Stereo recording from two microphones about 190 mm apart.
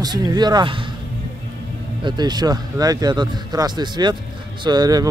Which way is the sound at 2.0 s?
25° right (ahead or behind).